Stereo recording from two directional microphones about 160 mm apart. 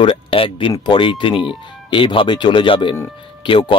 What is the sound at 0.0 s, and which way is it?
Speech, 35° left (ahead or behind).